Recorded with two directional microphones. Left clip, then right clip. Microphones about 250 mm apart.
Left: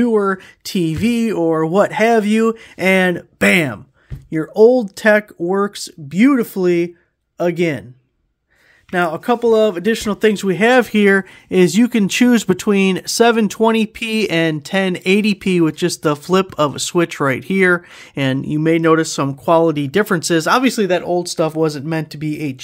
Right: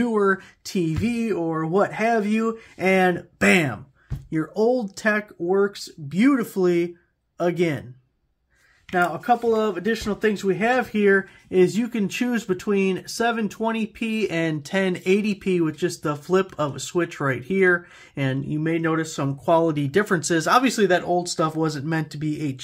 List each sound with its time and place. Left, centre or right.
0.0 s speech: left
8.9 s speech: left